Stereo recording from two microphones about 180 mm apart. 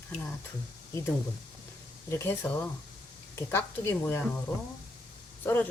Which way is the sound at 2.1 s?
15° left (ahead or behind).